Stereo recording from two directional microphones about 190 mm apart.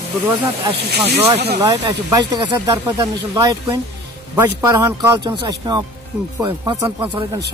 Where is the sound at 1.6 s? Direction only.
20° right (ahead or behind).